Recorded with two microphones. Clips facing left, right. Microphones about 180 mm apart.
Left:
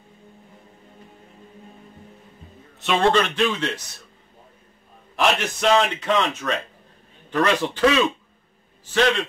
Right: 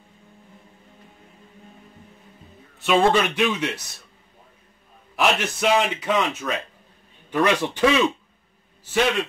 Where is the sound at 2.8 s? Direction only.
5° right (ahead or behind).